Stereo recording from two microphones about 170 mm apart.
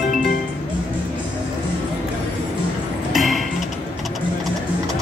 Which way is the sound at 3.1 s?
Centre (ahead or behind).